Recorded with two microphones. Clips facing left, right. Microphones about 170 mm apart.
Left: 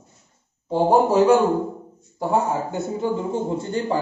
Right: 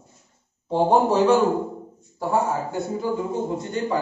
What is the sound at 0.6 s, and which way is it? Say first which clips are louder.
Speech: left 1 dB; 5° left (ahead or behind).